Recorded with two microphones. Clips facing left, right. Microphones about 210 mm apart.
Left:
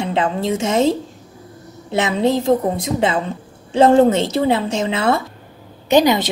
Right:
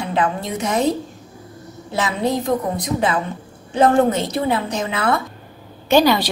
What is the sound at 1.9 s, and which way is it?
A woman's voice, 25° left (ahead or behind).